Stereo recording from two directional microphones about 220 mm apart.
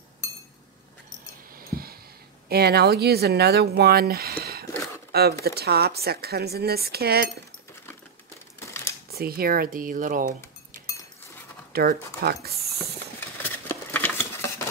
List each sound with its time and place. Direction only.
1.6 s a sound: 40° right (ahead or behind)
2.5 s speech: 45° right (ahead or behind)
8.5 s crumpling: 10° left (ahead or behind)
9.1 s speech: 45° right (ahead or behind)
11.7 s speech: 45° right (ahead or behind)
13.4 s a sound: 10° left (ahead or behind)